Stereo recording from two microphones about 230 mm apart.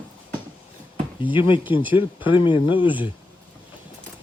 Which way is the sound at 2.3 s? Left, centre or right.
Left.